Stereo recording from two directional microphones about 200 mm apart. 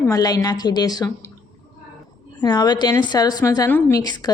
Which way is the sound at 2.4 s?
20° left (ahead or behind).